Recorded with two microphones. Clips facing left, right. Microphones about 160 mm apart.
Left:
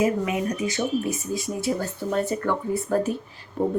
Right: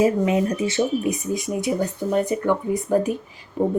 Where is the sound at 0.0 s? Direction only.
30° right (ahead or behind).